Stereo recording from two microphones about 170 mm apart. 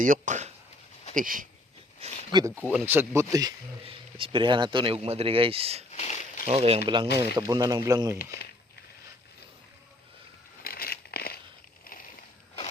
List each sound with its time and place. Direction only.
0.0 s speech: 50° right (ahead or behind)
2.3 s speech: 15° right (ahead or behind)
3.8 s speech: 30° right (ahead or behind)
5.9 s a sound: 40° left (ahead or behind)
6.5 s speech: 35° right (ahead or behind)
6.8 s speech: 25° right (ahead or behind)
8.2 s speech: 65° left (ahead or behind)
10.6 s a sound: 60° left (ahead or behind)